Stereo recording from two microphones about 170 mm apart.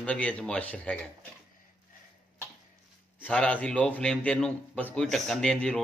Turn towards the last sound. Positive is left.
turn(degrees=5)  # may be behind; listen again after turning